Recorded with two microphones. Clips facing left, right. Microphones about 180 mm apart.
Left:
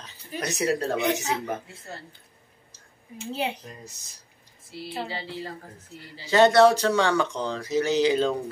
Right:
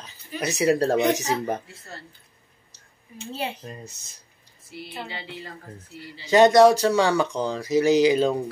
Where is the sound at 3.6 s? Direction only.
25° right (ahead or behind).